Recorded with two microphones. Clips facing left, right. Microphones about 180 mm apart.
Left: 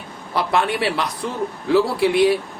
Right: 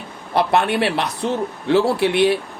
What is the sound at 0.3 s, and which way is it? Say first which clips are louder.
Speech: right 3 dB; 60° right (ahead or behind).